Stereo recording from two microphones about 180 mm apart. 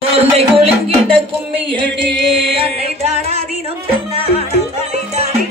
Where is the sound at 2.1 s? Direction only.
30° right (ahead or behind).